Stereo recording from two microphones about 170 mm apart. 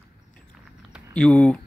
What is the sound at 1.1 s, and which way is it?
Speech, 5° left (ahead or behind).